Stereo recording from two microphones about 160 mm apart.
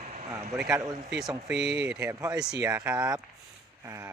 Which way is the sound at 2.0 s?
20° right (ahead or behind).